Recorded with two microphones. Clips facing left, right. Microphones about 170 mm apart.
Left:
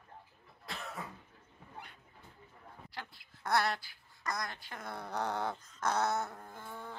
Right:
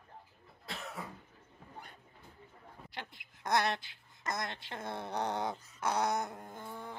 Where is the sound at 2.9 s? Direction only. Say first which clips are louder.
Right 2 dB; 20° right (ahead or behind).